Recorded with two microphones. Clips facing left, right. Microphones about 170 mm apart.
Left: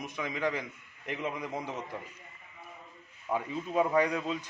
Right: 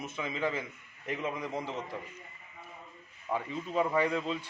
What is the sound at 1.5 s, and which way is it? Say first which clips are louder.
Speech: right 1 dB; 20° left (ahead or behind).